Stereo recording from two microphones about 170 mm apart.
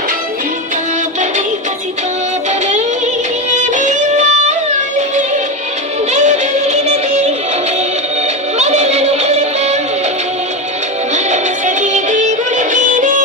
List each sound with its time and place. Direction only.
3.5 s music: 45° right (ahead or behind)
6.1 s music: 45° right (ahead or behind)
8.5 s music: 40° right (ahead or behind)
11.1 s music: 45° right (ahead or behind)